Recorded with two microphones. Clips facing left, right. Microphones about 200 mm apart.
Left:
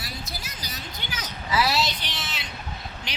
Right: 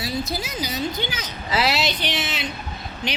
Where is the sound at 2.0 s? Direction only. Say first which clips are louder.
Right 10 dB; 65° right (ahead or behind).